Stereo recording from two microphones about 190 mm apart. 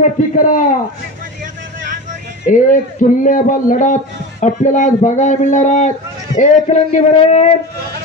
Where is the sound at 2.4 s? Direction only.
45° left (ahead or behind).